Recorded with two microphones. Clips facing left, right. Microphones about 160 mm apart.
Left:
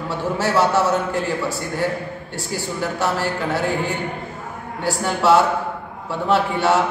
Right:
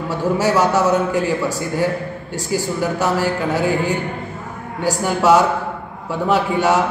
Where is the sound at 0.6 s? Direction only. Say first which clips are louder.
Left 1 dB; 40° right (ahead or behind).